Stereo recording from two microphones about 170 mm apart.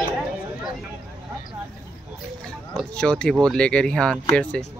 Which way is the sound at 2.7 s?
5° left (ahead or behind).